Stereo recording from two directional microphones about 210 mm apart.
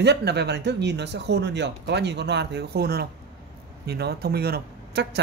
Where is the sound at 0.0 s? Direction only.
55° right (ahead or behind).